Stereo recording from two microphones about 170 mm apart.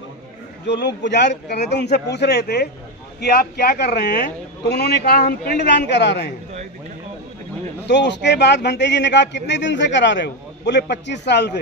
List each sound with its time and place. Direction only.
0.7 s a man's voice: 90° left; by 5.2 s 70° left (ahead or behind)
5.6 s speech: 85° left
7.8 s a man's voice: 90° left